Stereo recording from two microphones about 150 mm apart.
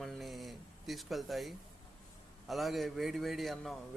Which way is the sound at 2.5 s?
Centre (ahead or behind).